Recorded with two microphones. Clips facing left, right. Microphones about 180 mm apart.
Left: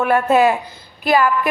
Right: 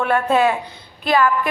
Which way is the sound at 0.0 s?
10° left (ahead or behind).